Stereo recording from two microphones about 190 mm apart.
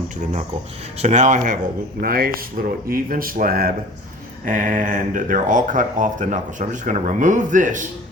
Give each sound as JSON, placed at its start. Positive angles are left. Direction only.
{"t": 0.9, "sound": "speech", "side_deg": -40}